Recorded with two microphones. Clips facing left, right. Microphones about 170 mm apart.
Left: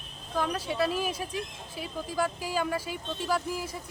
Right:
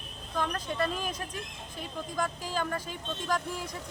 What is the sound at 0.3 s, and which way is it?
Speech, 10° left (ahead or behind).